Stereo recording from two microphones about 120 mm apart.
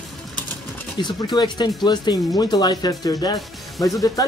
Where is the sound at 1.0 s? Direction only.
35° left (ahead or behind).